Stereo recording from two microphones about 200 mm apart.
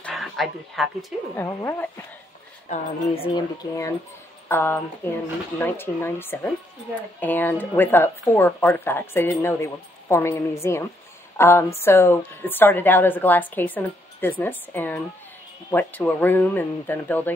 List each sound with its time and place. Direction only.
0.0 s a sound: centre (ahead or behind)
1.3 s speech: 10° left (ahead or behind)
2.7 s a woman's voice: 40° left (ahead or behind)
3.3 s speech: 15° left (ahead or behind)